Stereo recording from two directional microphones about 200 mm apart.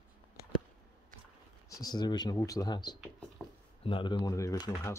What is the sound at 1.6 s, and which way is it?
Speech, 15° left (ahead or behind).